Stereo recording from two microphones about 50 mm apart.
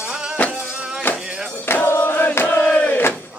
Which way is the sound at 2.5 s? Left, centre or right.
Left.